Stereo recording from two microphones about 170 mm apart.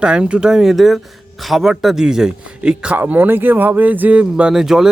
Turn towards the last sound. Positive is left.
turn(degrees=-5)  # may be behind; listen again after turning